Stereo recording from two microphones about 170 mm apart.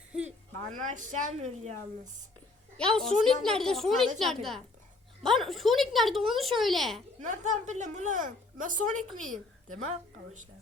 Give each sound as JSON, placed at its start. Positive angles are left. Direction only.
{"t": 0.3, "sound": "a woman's voice", "side_deg": -45}
{"t": 2.7, "sound": "a woman's voice", "side_deg": 5}
{"t": 7.3, "sound": "a woman's voice", "side_deg": -45}